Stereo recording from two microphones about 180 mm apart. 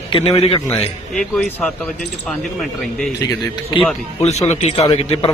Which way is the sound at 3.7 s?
25° left (ahead or behind).